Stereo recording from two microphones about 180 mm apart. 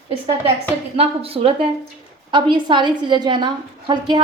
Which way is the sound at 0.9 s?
30° right (ahead or behind).